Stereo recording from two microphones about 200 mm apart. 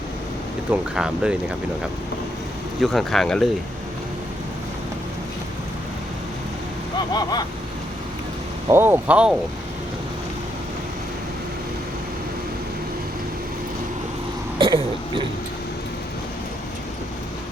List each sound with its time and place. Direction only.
0.7 s speech: 5° right (ahead or behind)
2.8 s speech: centre (ahead or behind)
7.1 s vehicle: 20° left (ahead or behind)
8.7 s speech: 10° right (ahead or behind)
14.6 s throat clearing: 25° right (ahead or behind)